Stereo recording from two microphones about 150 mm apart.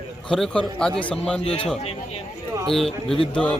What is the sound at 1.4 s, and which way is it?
Speech, 40° left (ahead or behind).